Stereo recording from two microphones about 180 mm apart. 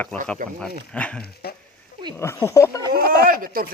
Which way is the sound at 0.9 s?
5° left (ahead or behind).